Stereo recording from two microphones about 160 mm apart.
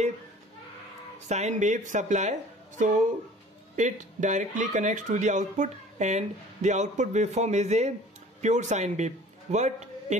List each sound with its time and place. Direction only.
1.3 s speech: 45° right (ahead or behind)
3.7 s a man's voice: 50° right (ahead or behind)